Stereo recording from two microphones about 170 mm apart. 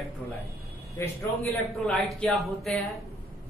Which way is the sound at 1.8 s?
5° left (ahead or behind).